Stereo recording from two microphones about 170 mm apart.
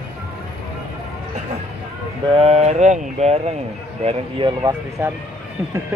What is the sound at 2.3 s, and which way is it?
Speech, 40° right (ahead or behind).